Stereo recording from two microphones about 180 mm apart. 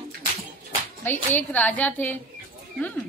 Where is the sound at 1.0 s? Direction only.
10° left (ahead or behind).